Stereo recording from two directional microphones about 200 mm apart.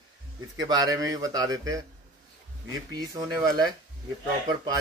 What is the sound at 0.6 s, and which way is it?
Speech, 20° right (ahead or behind).